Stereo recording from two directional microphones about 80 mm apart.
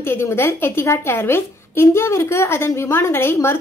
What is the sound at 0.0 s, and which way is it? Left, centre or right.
A woman's voice, left.